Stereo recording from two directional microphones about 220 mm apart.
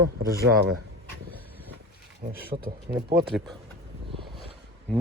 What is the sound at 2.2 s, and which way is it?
Speech, 35° right (ahead or behind).